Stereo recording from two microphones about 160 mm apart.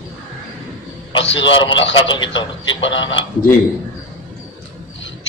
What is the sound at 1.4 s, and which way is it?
A man's voice, 30° left (ahead or behind).